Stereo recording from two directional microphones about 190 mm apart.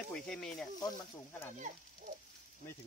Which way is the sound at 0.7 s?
15° left (ahead or behind).